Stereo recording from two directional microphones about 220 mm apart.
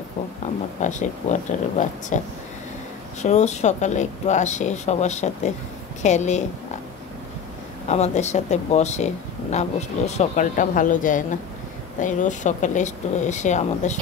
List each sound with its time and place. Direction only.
0.8 s speech: 35° left (ahead or behind)
7.9 s speech: 30° left (ahead or behind)